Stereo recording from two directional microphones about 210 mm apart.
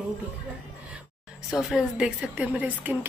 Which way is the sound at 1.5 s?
Centre (ahead or behind).